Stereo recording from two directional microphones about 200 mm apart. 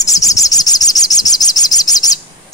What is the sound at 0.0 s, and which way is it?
Bird, 15° left (ahead or behind).